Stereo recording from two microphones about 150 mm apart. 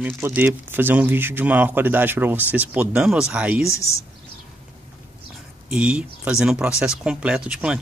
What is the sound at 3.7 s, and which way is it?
Speech, 20° left (ahead or behind).